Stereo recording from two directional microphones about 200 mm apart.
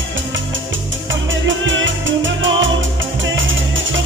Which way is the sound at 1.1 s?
70° right (ahead or behind).